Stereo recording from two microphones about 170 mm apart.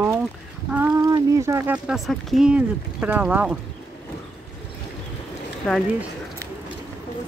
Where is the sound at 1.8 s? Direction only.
Centre (ahead or behind).